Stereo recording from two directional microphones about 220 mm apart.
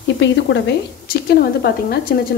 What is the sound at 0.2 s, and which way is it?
Speech, 55° left (ahead or behind).